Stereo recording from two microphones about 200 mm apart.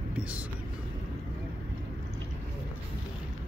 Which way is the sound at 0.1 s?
5° right (ahead or behind).